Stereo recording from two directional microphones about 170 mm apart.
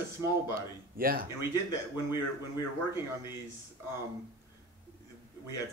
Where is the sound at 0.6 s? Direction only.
60° right (ahead or behind).